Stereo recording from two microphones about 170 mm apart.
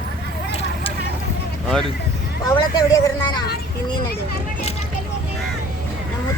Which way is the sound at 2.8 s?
25° left (ahead or behind).